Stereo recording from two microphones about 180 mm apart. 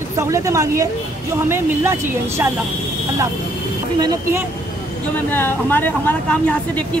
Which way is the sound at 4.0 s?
15° right (ahead or behind).